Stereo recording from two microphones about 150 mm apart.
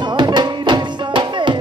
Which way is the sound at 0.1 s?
30° right (ahead or behind).